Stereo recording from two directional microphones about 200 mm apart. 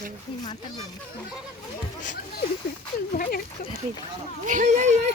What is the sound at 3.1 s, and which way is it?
Speech, 45° left (ahead or behind).